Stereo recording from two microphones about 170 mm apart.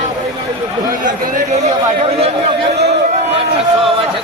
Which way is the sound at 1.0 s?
50° right (ahead or behind).